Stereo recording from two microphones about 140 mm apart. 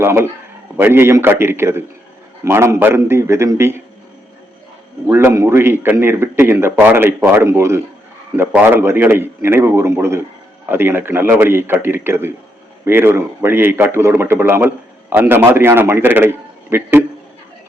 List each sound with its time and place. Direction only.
0.0 s a man's voice: 15° right (ahead or behind)
5.1 s a man's voice: 20° right (ahead or behind)